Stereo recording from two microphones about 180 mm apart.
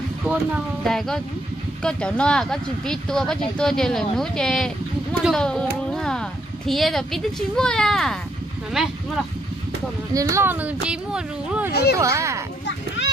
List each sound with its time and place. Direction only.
0.8 s speech: 5° left (ahead or behind)
10.1 s speech: 15° right (ahead or behind)
11.7 s speech: 60° left (ahead or behind)
12.0 s speech: 15° right (ahead or behind)
12.6 s children playing: 80° left